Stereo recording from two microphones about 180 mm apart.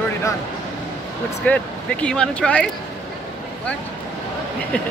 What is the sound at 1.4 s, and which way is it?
Speech, 10° left (ahead or behind).